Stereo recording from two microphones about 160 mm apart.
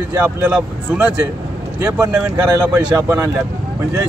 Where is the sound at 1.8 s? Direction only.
20° right (ahead or behind).